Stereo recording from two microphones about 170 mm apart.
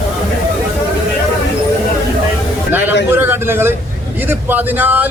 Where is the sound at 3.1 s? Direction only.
15° right (ahead or behind).